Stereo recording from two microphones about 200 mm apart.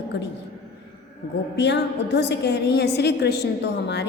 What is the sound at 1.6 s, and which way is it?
A woman's voice, 60° left (ahead or behind).